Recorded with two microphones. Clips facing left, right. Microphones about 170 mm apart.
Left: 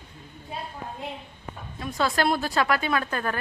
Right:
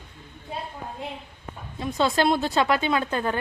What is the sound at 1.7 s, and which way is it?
Speech, 25° right (ahead or behind).